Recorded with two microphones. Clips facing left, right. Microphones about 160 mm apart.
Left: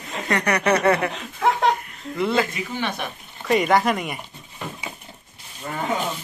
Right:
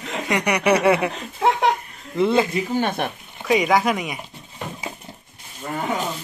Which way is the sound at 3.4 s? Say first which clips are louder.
Even; centre (ahead or behind).